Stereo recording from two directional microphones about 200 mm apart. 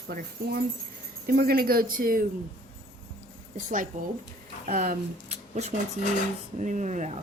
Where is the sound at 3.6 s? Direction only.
40° right (ahead or behind).